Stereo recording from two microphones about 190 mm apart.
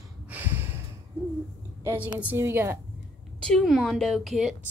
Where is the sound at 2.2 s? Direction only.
10° right (ahead or behind).